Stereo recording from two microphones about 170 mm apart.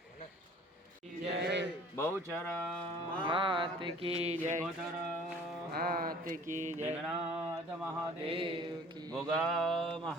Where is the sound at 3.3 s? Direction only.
30° right (ahead or behind); by 4.6 s 45° right (ahead or behind).